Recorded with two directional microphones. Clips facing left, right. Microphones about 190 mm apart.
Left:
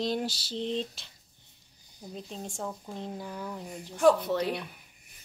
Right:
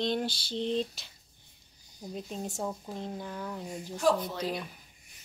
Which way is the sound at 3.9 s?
65° left (ahead or behind).